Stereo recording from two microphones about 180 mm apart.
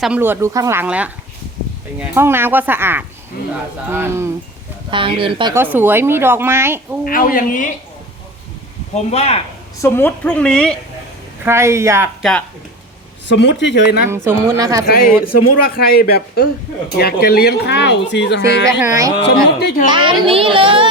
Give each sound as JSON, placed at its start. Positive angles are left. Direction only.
{"t": 0.0, "sound": "speech", "side_deg": -10}
{"t": 4.9, "sound": "speech", "side_deg": -30}
{"t": 5.7, "sound": "speech", "side_deg": -10}
{"t": 7.0, "sound": "speech", "side_deg": 50}
{"t": 9.0, "sound": "speech", "side_deg": 35}
{"t": 9.8, "sound": "speech", "side_deg": 10}
{"t": 11.4, "sound": "speech", "side_deg": -15}
{"t": 13.2, "sound": "speech", "side_deg": 80}
{"t": 14.3, "sound": "speech", "side_deg": -20}
{"t": 14.8, "sound": "speech", "side_deg": 55}
{"t": 18.6, "sound": "speech", "side_deg": -15}
{"t": 19.3, "sound": "speech", "side_deg": 65}
{"t": 19.9, "sound": "speech", "side_deg": -25}